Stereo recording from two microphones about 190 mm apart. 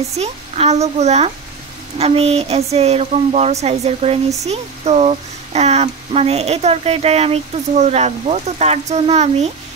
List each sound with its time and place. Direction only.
0.2 s speech: 35° right (ahead or behind)